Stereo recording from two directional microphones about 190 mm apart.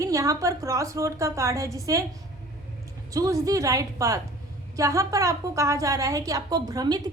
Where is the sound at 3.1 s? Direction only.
15° right (ahead or behind).